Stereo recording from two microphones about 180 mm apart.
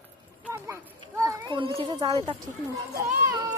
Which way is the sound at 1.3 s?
25° right (ahead or behind).